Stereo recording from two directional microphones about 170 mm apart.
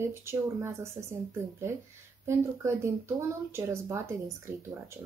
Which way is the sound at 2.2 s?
15° right (ahead or behind).